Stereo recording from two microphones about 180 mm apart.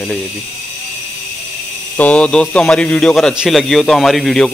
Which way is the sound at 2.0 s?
5° left (ahead or behind).